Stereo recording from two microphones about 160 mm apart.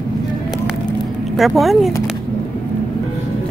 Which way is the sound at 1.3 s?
Centre (ahead or behind).